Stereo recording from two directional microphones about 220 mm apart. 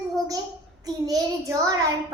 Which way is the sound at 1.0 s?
15° right (ahead or behind).